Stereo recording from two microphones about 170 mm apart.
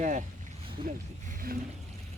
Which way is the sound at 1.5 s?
65° right (ahead or behind).